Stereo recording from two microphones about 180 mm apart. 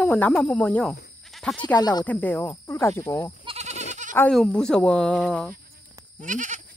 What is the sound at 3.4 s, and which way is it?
Goat, 35° right (ahead or behind).